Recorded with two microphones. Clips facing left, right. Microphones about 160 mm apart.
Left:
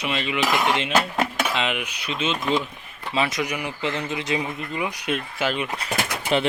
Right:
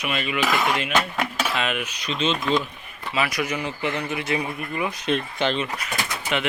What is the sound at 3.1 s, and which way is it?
Speech, 25° left (ahead or behind).